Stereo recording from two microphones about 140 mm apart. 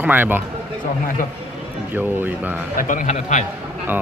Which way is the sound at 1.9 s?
15° right (ahead or behind).